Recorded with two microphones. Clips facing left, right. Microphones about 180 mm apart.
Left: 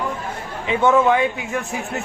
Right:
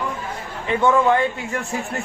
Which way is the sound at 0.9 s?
5° left (ahead or behind).